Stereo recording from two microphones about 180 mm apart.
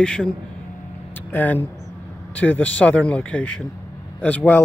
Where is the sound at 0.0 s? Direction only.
5° left (ahead or behind).